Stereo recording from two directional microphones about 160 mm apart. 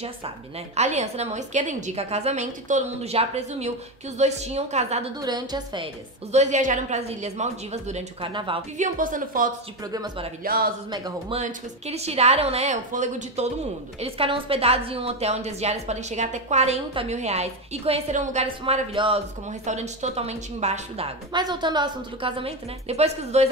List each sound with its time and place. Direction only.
0.7 s a woman's voice: 45° right (ahead or behind)
5.2 s a woman's voice: 25° right (ahead or behind)
6.3 s a woman's voice: 50° right (ahead or behind)
8.3 s a woman's voice: 30° right (ahead or behind)
8.7 s a woman's voice: 55° right (ahead or behind)
9.9 s a woman's voice: 30° right (ahead or behind)
10.4 s speech: 70° right (ahead or behind)
10.9 s a woman's voice: 25° right (ahead or behind)
11.3 s a woman's voice: 45° right (ahead or behind)
19.6 s a woman's voice: 45° right (ahead or behind)
21.3 s a woman's voice: 25° right (ahead or behind)